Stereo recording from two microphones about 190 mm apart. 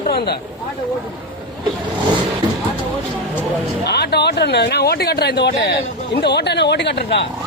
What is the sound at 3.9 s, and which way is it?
A man's voice, 60° left (ahead or behind).